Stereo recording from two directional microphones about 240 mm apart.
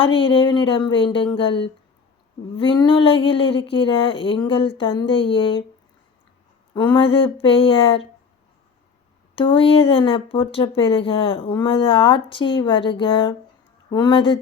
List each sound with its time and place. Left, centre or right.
0.0 s speech: left
6.7 s speech: centre
9.3 s speech: left